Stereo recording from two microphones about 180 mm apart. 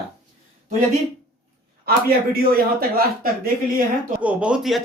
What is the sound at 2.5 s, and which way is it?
Speech, 55° right (ahead or behind).